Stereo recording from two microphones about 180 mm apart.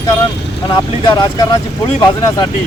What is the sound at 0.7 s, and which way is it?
Speech, 25° left (ahead or behind).